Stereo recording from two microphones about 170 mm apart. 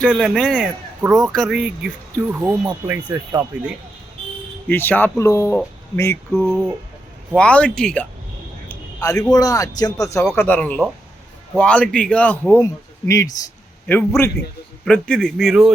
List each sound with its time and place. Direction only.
0.1 s speech: centre (ahead or behind)
4.7 s speech: 10° left (ahead or behind)
8.7 s a sound: 20° left (ahead or behind)
9.3 s speech: 20° left (ahead or behind); by 15.7 s centre (ahead or behind)